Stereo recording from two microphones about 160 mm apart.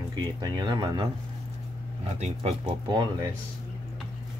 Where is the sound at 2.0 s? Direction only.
45° right (ahead or behind).